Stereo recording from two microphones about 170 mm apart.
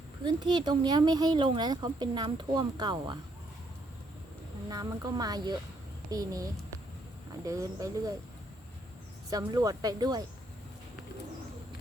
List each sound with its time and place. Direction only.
0.3 s speech: 25° right (ahead or behind)
4.7 s speech: 20° right (ahead or behind)
9.3 s speech: 20° right (ahead or behind)